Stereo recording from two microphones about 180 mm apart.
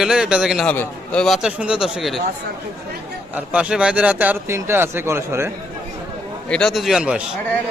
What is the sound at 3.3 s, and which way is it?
Speech, 5° right (ahead or behind).